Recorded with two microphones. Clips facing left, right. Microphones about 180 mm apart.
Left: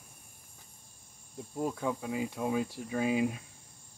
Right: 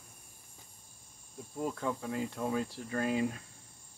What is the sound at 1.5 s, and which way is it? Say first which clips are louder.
Speech: left 2 dB; 15° left (ahead or behind).